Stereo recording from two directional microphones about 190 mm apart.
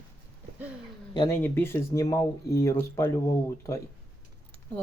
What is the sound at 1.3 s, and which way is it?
Speech, 10° left (ahead or behind).